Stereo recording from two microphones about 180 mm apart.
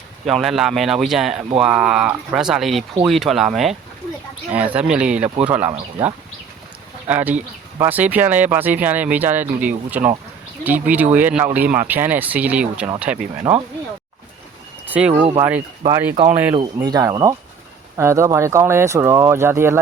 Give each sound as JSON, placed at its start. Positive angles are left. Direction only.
{"t": 0.3, "sound": "speech", "side_deg": 0}
{"t": 7.1, "sound": "speech", "side_deg": -10}
{"t": 13.5, "sound": "speech", "side_deg": -20}
{"t": 14.8, "sound": "a sound", "side_deg": -10}
{"t": 15.1, "sound": "speech", "side_deg": -30}
{"t": 15.4, "sound": "speech", "side_deg": -10}
{"t": 16.7, "sound": "speech", "side_deg": -20}